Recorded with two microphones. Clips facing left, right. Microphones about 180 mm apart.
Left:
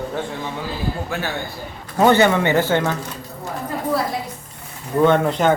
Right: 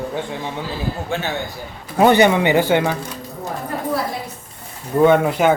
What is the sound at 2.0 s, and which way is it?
Speech, 15° right (ahead or behind).